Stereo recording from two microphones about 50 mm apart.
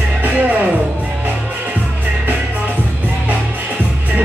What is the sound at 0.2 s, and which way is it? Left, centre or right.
Music, right.